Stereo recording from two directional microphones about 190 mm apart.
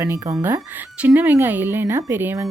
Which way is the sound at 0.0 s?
15° right (ahead or behind).